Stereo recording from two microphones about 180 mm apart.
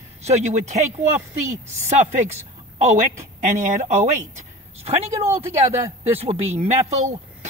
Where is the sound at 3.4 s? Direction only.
40° right (ahead or behind).